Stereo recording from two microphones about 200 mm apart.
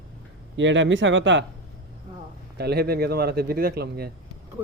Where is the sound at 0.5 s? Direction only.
65° right (ahead or behind).